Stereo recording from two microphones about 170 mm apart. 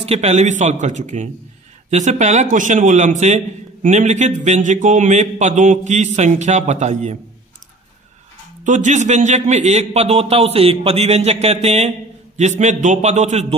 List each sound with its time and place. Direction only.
0.0 s a man's voice: 40° right (ahead or behind)
8.6 s a man's voice: 45° right (ahead or behind)